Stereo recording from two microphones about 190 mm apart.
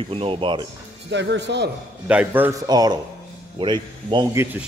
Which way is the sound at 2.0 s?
5° right (ahead or behind).